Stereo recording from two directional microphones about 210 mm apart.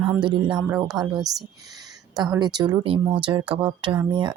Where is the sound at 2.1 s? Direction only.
20° right (ahead or behind).